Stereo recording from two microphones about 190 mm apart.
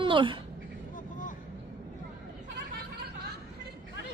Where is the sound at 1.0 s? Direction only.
45° left (ahead or behind).